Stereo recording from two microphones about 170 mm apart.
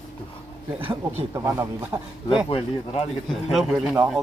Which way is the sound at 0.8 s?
30° right (ahead or behind).